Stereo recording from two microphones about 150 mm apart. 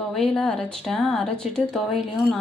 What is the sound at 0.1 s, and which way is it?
Speech, 5° left (ahead or behind).